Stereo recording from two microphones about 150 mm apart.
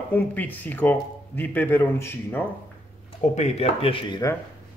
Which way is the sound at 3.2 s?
45° left (ahead or behind).